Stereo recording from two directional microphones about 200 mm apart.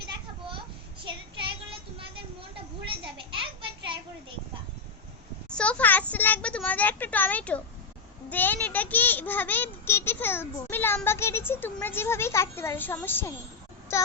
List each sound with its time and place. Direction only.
1.0 s child singing: 25° right (ahead or behind)
2.8 s a sound: 25° right (ahead or behind)
5.5 s a child's voice: 5° left (ahead or behind)